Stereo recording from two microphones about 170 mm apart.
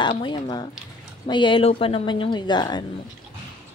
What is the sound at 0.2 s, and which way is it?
A woman's voice, 25° left (ahead or behind).